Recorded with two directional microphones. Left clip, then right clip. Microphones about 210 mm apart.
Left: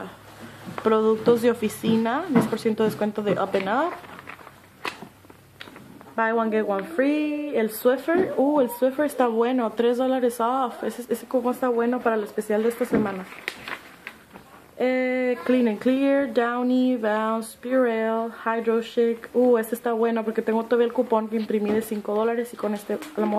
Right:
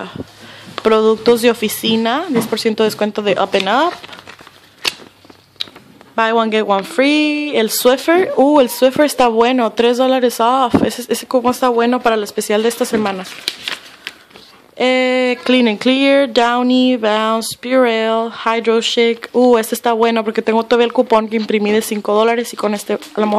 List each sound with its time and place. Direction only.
0.8 s speech: 30° right (ahead or behind)
6.1 s speech: 40° right (ahead or behind)
14.8 s speech: 40° right (ahead or behind)